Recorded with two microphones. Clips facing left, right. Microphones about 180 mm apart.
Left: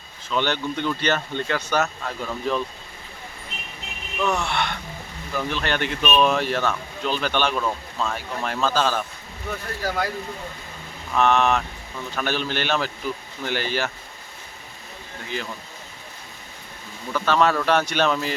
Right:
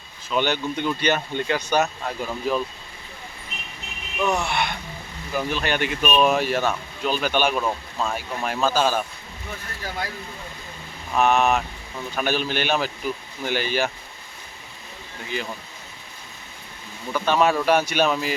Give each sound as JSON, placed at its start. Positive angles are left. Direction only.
{"t": 0.3, "sound": "speech", "side_deg": -15}
{"t": 4.2, "sound": "speech", "side_deg": -10}
{"t": 9.8, "sound": "speech", "side_deg": 50}
{"t": 11.1, "sound": "speech", "side_deg": -10}
{"t": 17.2, "sound": "speech", "side_deg": -15}